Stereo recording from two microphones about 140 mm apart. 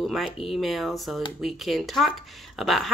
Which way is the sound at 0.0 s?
Centre (ahead or behind).